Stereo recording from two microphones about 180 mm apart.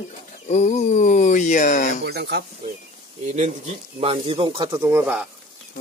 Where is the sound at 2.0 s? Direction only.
65° right (ahead or behind).